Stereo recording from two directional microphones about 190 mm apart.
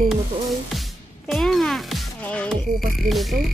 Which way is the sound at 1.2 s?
Centre (ahead or behind).